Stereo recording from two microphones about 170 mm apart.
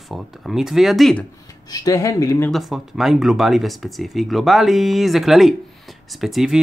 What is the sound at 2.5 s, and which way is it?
Speech, centre (ahead or behind).